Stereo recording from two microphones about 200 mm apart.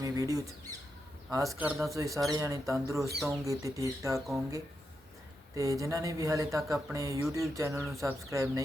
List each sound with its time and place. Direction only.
0.0 s speech: 15° right (ahead or behind)
5.5 s speech: 15° right (ahead or behind)
7.8 s speech: centre (ahead or behind)
8.3 s speech: 15° right (ahead or behind)